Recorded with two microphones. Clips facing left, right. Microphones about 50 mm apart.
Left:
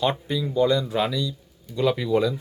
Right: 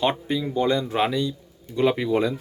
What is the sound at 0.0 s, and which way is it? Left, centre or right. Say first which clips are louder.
Speech: right 1 dB; right.